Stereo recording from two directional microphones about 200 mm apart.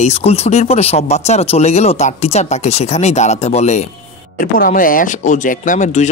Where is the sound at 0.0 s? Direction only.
30° left (ahead or behind).